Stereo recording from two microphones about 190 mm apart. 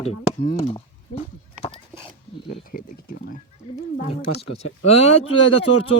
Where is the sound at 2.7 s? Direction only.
50° left (ahead or behind).